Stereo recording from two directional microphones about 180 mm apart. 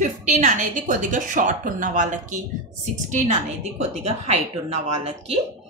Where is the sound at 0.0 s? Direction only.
45° right (ahead or behind).